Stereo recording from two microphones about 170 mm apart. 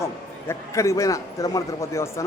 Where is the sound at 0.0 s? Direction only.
15° left (ahead or behind).